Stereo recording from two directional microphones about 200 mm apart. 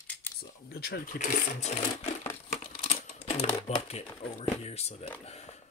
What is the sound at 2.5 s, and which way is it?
Typing, 30° left (ahead or behind).